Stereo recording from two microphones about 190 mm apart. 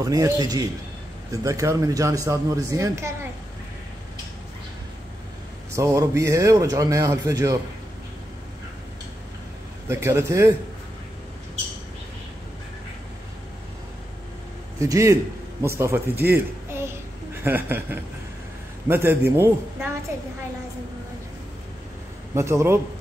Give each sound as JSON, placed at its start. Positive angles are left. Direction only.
{"t": 0.0, "sound": "a man's voice", "side_deg": -20}
{"t": 5.8, "sound": "speech", "side_deg": -15}
{"t": 9.8, "sound": "speech", "side_deg": -15}
{"t": 14.8, "sound": "a woman's voice", "side_deg": -15}
{"t": 22.3, "sound": "speech", "side_deg": -15}